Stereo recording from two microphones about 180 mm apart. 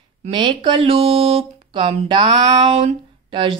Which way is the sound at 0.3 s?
25° right (ahead or behind).